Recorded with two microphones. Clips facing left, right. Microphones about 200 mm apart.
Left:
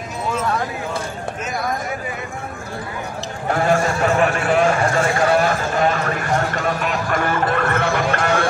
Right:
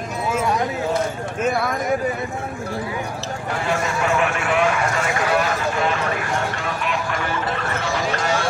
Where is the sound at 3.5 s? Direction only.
45° left (ahead or behind).